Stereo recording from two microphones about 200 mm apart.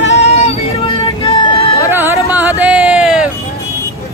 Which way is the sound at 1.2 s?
25° left (ahead or behind).